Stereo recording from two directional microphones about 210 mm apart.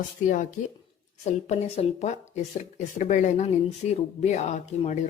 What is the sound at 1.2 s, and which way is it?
Speech, 30° left (ahead or behind).